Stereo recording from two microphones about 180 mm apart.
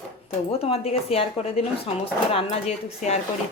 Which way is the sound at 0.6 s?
30° left (ahead or behind).